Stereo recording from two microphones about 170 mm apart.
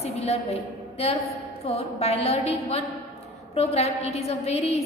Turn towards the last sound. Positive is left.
turn(degrees=40)  # may be behind; listen again after turning